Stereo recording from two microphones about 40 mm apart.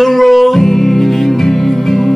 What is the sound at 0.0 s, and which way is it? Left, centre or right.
Music, centre.